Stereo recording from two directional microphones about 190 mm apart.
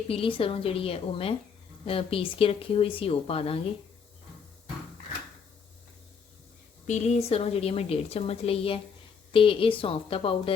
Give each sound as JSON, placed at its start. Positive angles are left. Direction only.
{"t": 0.1, "sound": "speech", "side_deg": 30}
{"t": 6.8, "sound": "a woman's voice", "side_deg": 35}